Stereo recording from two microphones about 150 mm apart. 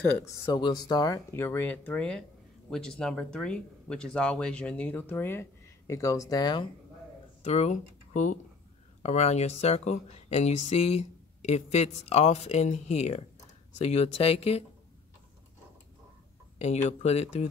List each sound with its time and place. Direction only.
0.5 s speech: 30° left (ahead or behind)
7.4 s speech: 50° left (ahead or behind)
16.5 s speech: 45° left (ahead or behind)